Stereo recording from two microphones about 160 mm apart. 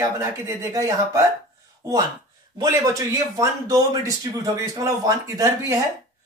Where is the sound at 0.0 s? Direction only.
20° right (ahead or behind).